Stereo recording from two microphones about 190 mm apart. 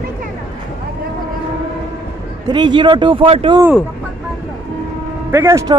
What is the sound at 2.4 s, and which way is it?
Speech, 25° right (ahead or behind).